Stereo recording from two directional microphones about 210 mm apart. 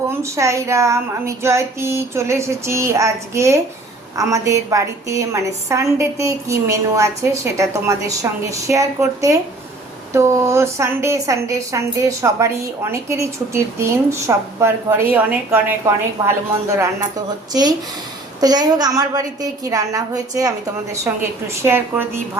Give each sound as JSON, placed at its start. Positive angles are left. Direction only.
{"t": 0.2, "sound": "a woman's voice", "side_deg": -15}
{"t": 16.7, "sound": "a woman's voice", "side_deg": -15}